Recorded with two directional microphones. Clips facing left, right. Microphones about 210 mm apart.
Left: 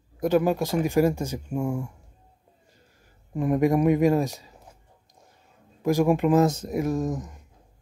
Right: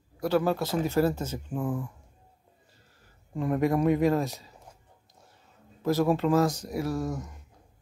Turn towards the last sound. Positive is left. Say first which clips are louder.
# left 4 dB
turn(degrees=20)  # may be behind; listen again after turning